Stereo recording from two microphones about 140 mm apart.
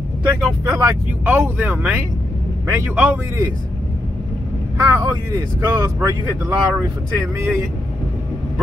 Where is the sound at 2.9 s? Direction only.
10° right (ahead or behind).